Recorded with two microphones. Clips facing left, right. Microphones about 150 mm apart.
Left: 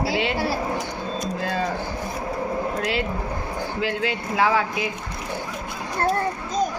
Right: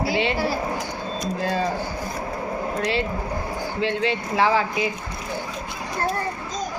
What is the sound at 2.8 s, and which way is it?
Speech, 5° left (ahead or behind).